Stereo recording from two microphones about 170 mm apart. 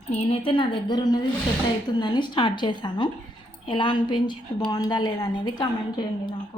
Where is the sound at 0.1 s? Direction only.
35° left (ahead or behind).